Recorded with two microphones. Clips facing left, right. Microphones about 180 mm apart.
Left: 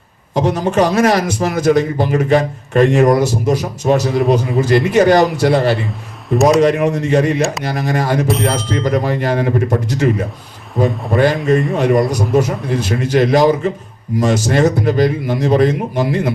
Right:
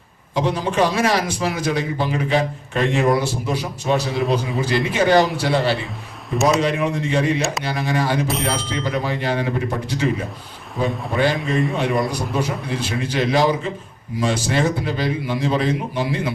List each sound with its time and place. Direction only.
0.3 s a man's voice: 45° left (ahead or behind)
8.3 s speech: centre (ahead or behind)
8.5 s a man's voice: 40° left (ahead or behind)